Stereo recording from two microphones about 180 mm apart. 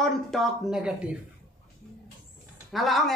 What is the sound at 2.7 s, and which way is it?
Speech, centre (ahead or behind).